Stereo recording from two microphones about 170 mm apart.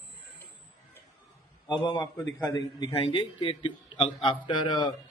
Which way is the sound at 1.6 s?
25° left (ahead or behind).